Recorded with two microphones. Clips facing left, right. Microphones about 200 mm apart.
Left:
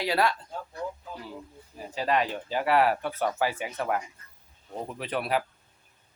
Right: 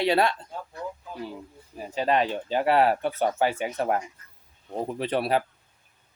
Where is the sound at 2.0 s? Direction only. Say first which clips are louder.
Right 3 dB; 25° right (ahead or behind).